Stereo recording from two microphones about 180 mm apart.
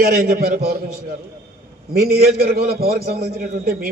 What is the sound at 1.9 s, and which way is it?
A man's voice, 55° right (ahead or behind).